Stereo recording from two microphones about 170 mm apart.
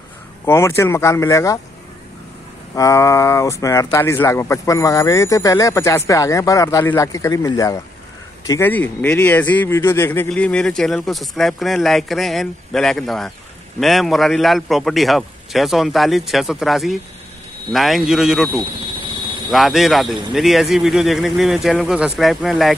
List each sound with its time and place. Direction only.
0.5 s speech: 15° left (ahead or behind)
2.7 s speech: 20° left (ahead or behind); by 18.5 s centre (ahead or behind)
19.5 s speech: centre (ahead or behind)